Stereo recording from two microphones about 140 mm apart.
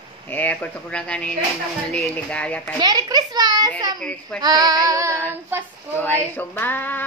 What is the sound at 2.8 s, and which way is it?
Speech, 30° right (ahead or behind).